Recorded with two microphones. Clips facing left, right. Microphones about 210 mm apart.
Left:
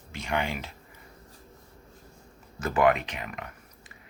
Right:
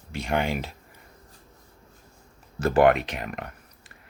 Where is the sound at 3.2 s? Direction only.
45° right (ahead or behind).